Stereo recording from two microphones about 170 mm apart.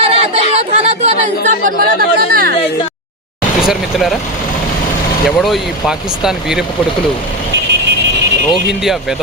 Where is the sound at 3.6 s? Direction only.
Centre (ahead or behind).